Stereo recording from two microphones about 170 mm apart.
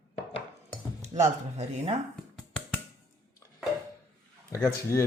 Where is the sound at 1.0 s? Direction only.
45° right (ahead or behind).